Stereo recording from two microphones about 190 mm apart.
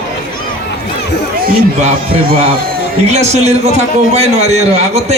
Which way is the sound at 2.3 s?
30° right (ahead or behind).